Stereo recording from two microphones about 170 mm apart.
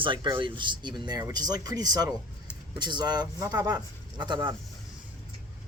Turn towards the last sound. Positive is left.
turn(degrees=-25)  # may be behind; listen again after turning